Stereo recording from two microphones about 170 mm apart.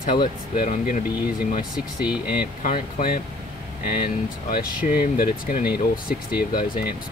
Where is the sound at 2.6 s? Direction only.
55° left (ahead or behind).